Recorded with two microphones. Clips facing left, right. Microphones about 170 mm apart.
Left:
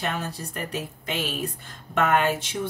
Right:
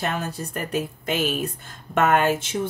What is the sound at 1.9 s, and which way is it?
Speech, 45° right (ahead or behind).